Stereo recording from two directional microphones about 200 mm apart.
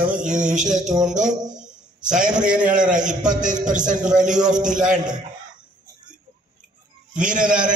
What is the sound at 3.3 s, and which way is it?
Speech, 40° right (ahead or behind).